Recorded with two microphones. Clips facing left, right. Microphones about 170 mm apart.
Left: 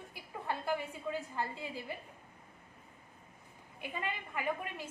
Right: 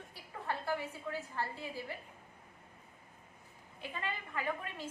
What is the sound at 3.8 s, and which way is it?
A woman's voice, 15° left (ahead or behind).